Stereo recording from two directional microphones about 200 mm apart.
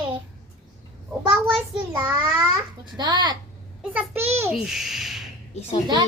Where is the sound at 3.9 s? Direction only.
10° right (ahead or behind).